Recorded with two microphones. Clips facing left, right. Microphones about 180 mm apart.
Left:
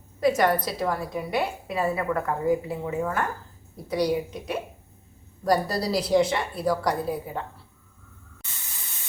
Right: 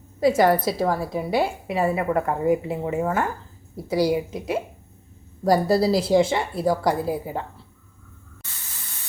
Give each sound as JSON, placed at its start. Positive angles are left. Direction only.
{"t": 0.2, "sound": "a woman's voice", "side_deg": -30}
{"t": 5.5, "sound": "a woman's voice", "side_deg": -25}